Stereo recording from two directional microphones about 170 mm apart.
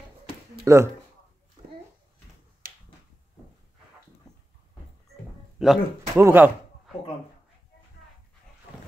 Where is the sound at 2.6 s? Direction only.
55° right (ahead or behind).